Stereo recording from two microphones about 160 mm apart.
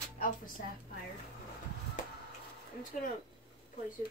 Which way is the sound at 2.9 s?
50° left (ahead or behind).